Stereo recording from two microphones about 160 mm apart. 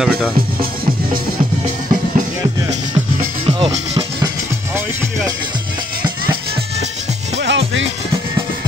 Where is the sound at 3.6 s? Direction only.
30° right (ahead or behind).